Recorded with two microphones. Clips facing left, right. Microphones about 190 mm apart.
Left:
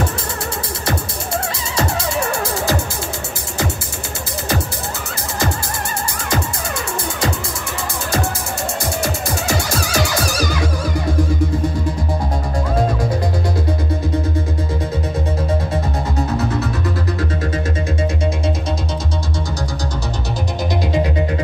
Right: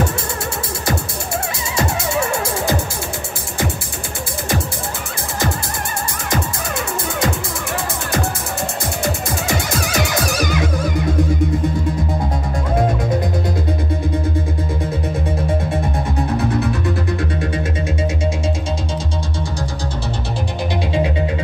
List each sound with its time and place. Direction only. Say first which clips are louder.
9.5 s music: even; 20° right (ahead or behind)
12.7 s music: right 2 dB; 20° right (ahead or behind)